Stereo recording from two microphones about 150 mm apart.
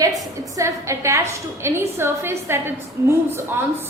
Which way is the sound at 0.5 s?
20° right (ahead or behind).